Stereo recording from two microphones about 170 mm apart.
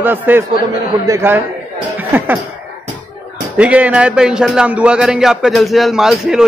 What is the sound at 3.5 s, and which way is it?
Speech, 10° right (ahead or behind).